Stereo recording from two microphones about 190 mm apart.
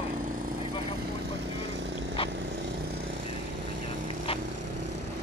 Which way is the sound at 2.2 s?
30° left (ahead or behind).